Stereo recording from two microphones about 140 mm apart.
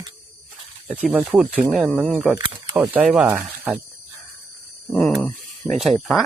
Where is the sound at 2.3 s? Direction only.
30° right (ahead or behind).